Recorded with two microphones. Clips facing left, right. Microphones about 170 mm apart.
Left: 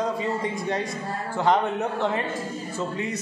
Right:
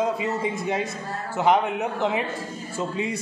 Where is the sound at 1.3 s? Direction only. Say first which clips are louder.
Right 1 dB; 10° right (ahead or behind).